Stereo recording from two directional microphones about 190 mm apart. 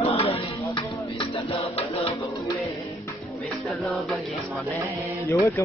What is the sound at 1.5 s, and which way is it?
Music, 30° left (ahead or behind).